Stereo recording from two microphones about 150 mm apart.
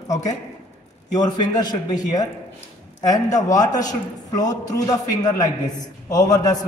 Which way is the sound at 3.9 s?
25° left (ahead or behind).